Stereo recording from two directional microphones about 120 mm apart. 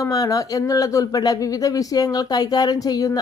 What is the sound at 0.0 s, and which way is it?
Speech, 30° left (ahead or behind).